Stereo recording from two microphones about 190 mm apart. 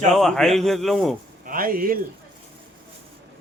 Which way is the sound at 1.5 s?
50° right (ahead or behind).